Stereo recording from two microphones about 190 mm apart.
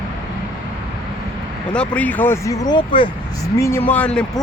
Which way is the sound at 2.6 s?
25° left (ahead or behind).